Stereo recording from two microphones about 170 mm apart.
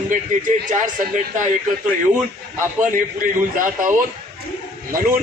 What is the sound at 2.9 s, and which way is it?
Speech, 50° right (ahead or behind).